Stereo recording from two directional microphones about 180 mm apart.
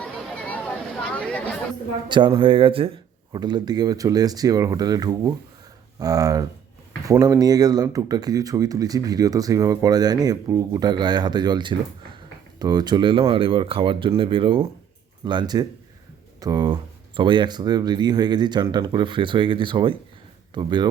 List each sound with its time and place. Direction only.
0.0 s chatter: 10° left (ahead or behind)
2.0 s speech: 25° right (ahead or behind)